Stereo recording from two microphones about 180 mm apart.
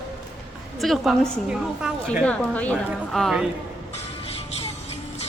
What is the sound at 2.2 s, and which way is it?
A woman's voice, 10° left (ahead or behind).